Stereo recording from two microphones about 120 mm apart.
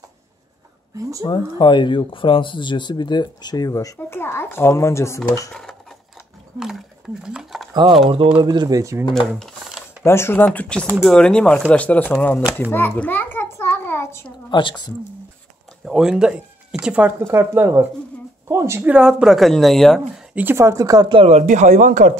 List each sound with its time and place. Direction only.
1.2 s speech: 40° left (ahead or behind); by 5.5 s 25° left (ahead or behind)
5.5 s sewing machine: 5° left (ahead or behind)
7.2 s a sound: 5° right (ahead or behind)
8.4 s speech: 35° right (ahead or behind)
10.0 s speech: 20° left (ahead or behind)
12.7 s a sound: 15° left (ahead or behind)
14.2 s speech: 40° left (ahead or behind)
15.8 s speech: 5° right (ahead or behind)
17.2 s a woman's voice: 20° right (ahead or behind); by 20.2 s 5° left (ahead or behind)
20.3 s a woman's voice: 20° right (ahead or behind)
21.1 s speech: 50° right (ahead or behind)
21.4 s speech: 80° right